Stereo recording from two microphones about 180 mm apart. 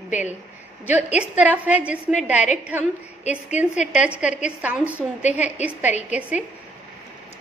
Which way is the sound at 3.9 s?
5° right (ahead or behind).